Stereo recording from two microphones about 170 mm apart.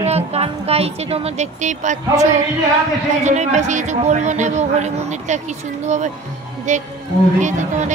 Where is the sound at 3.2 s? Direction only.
45° right (ahead or behind).